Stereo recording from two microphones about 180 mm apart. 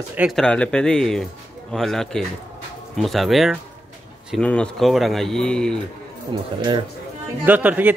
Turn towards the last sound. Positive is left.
turn(degrees=-10)  # may be behind; listen again after turning